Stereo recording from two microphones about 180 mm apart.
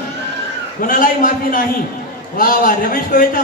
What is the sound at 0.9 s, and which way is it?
A man's voice, 50° left (ahead or behind).